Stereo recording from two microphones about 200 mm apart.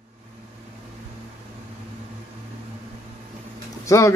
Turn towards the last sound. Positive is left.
turn(degrees=15)  # may be behind; listen again after turning